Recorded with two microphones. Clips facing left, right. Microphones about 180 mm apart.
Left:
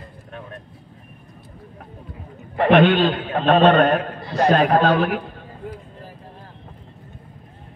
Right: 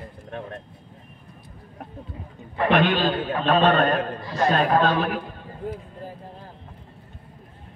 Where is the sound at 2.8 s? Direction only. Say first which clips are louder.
Left 4 dB; 70° left (ahead or behind).